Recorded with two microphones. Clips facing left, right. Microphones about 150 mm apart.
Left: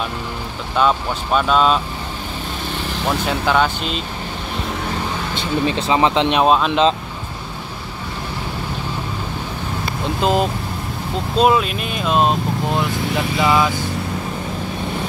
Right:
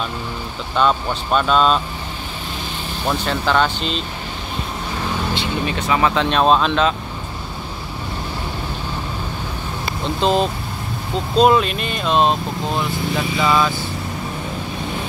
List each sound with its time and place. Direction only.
0.7 s speech: 5° left (ahead or behind)
3.3 s speech: 10° left (ahead or behind)
5.7 s speech: 25° left (ahead or behind); by 6.8 s 10° left (ahead or behind)
10.2 s speech: 10° left (ahead or behind)
12.7 s speech: 15° left (ahead or behind)